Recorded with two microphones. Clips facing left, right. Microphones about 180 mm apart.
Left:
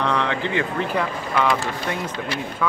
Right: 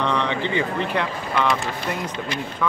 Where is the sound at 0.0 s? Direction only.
5° left (ahead or behind).